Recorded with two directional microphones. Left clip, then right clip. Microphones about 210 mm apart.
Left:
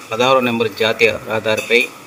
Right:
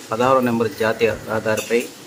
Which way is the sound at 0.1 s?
15° left (ahead or behind).